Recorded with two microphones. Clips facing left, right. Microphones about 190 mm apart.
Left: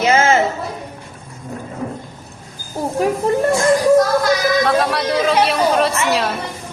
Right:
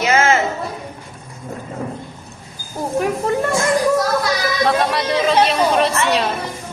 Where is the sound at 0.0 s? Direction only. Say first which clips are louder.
Left 1 dB; 30° left (ahead or behind).